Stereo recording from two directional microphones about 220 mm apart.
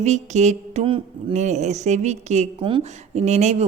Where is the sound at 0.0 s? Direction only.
30° right (ahead or behind).